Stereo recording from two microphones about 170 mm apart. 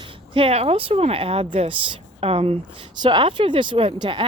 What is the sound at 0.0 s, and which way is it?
Speech, 30° right (ahead or behind).